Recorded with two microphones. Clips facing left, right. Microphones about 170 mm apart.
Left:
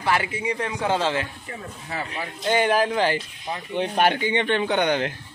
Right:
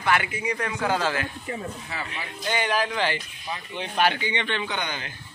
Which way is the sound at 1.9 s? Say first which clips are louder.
Left 4 dB; 45° left (ahead or behind).